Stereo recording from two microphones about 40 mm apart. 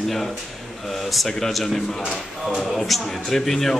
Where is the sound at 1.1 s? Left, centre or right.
Centre.